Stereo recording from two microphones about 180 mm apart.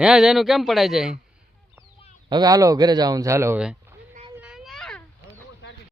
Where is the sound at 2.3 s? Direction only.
20° right (ahead or behind).